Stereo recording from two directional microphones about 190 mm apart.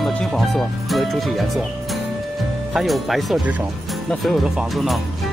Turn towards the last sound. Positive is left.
turn(degrees=0)  # may be behind; listen again after turning